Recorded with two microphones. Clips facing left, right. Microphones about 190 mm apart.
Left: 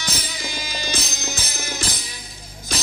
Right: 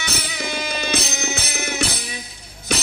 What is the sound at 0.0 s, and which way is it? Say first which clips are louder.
Music: right 3 dB; 65° right (ahead or behind).